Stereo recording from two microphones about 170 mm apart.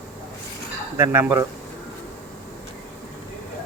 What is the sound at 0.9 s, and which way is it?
Speech, 15° right (ahead or behind).